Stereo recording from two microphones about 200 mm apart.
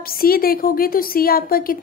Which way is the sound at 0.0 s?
50° left (ahead or behind).